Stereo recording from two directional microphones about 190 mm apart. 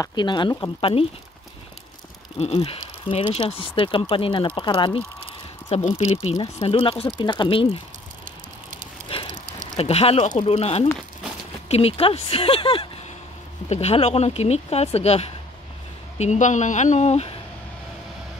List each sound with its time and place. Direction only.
0.0 s speech: 25° left (ahead or behind)
2.3 s speech: 30° left (ahead or behind)
9.3 s a sound: 40° right (ahead or behind)
9.8 s speech: 30° left (ahead or behind)